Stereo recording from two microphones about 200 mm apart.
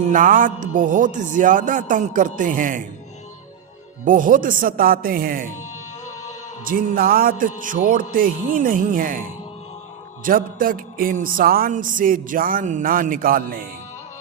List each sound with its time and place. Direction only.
0.1 s speech: 40° right (ahead or behind)
4.0 s music: 40° right (ahead or behind)
6.7 s music: 45° right (ahead or behind)
10.2 s music: 45° right (ahead or behind)